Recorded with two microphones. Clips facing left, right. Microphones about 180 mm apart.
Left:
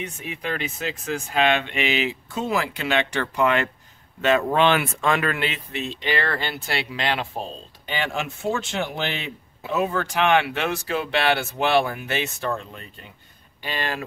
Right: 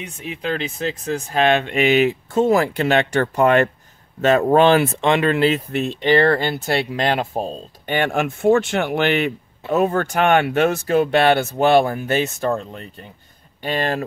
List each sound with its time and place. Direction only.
0.4 s speech: 30° right (ahead or behind)
5.0 s speech: 25° right (ahead or behind)
5.5 s speech: 50° right (ahead or behind); by 9.3 s 65° right (ahead or behind)
9.7 s speech: 50° right (ahead or behind)